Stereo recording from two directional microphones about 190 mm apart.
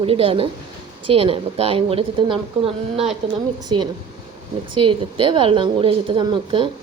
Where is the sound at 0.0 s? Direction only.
30° right (ahead or behind).